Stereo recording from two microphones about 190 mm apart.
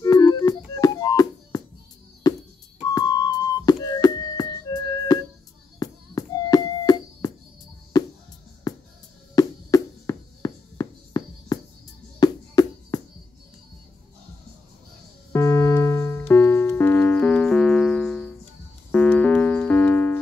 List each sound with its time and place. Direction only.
0.0 s music: 15° left (ahead or behind)
15.3 s music: 15° left (ahead or behind)